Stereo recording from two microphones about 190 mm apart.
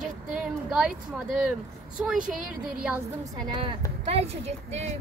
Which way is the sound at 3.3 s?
25° right (ahead or behind).